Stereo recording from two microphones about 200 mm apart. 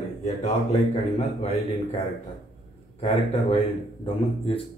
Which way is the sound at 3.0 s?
30° left (ahead or behind).